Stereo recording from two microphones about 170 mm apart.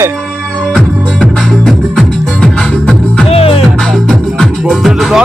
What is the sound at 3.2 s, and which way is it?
Music, 35° left (ahead or behind).